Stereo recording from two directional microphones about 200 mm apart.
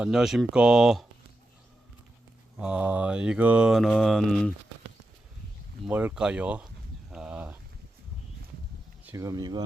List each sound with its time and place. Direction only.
0.0 s mantra: centre (ahead or behind)
2.6 s mantra: 5° right (ahead or behind)
5.9 s speech: 10° right (ahead or behind)
7.1 s a sound: 5° right (ahead or behind)
9.0 s speech: 15° right (ahead or behind)